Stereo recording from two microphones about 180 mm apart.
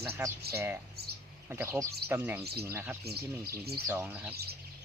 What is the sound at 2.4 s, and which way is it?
Speech, 60° right (ahead or behind).